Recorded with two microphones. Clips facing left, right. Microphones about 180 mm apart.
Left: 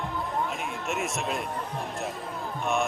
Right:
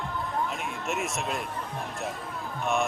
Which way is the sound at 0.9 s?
Centre (ahead or behind).